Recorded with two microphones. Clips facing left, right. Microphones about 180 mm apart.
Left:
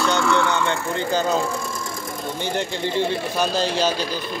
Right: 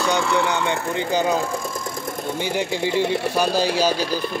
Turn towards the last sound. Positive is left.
turn(degrees=-10)  # may be behind; listen again after turning